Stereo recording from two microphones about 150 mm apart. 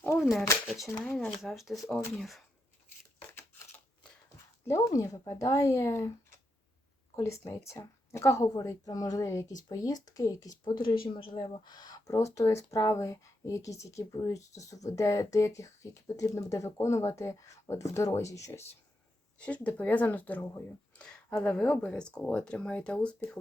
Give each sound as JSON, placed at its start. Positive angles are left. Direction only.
{"t": 0.2, "sound": "speech", "side_deg": 0}
{"t": 3.2, "sound": "a sound", "side_deg": 15}
{"t": 4.6, "sound": "speech", "side_deg": 20}
{"t": 7.2, "sound": "speech", "side_deg": 20}
{"t": 10.8, "sound": "a woman's voice", "side_deg": 75}
{"t": 11.1, "sound": "speech", "side_deg": 30}
{"t": 19.4, "sound": "speech", "side_deg": 10}